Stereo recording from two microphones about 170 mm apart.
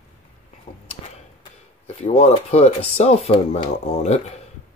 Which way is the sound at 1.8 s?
40° left (ahead or behind).